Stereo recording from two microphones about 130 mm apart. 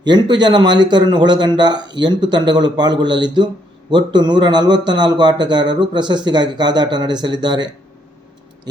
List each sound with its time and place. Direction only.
0.0 s speech: 35° right (ahead or behind)